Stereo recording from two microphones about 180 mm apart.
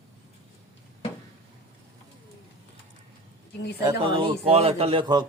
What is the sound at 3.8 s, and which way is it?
A man's voice, 25° right (ahead or behind).